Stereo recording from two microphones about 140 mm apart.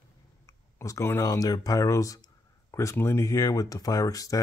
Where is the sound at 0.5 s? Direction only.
20° left (ahead or behind).